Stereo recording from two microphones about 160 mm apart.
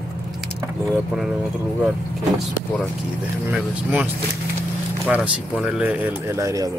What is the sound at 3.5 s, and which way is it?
Speech, 5° right (ahead or behind).